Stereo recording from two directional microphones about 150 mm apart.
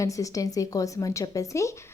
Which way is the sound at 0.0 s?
20° left (ahead or behind).